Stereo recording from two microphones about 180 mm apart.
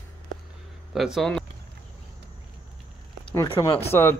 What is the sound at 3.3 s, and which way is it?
Speech, 15° left (ahead or behind).